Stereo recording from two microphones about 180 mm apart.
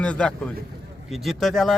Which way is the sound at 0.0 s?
5° left (ahead or behind).